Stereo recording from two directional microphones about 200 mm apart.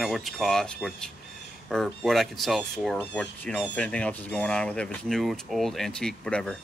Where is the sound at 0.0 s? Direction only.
Centre (ahead or behind).